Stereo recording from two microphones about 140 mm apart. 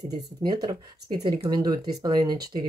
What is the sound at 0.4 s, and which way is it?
Speech, 30° right (ahead or behind).